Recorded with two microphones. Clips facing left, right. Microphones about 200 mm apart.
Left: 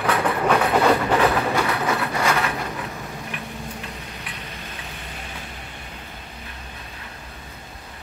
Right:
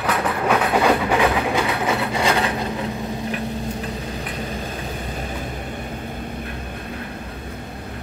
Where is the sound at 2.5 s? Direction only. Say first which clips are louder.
Right 5 dB; 25° right (ahead or behind); by 6.4 s 50° right (ahead or behind).